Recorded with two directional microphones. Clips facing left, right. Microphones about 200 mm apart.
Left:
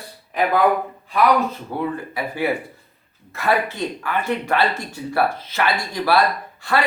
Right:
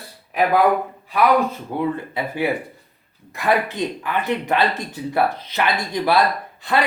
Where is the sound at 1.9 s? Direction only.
20° right (ahead or behind).